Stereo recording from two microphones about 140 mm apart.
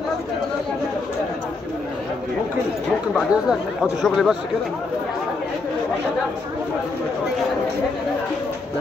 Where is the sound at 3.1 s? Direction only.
5° right (ahead or behind).